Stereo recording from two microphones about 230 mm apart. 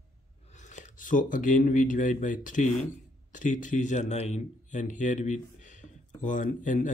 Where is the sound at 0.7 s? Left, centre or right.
Left.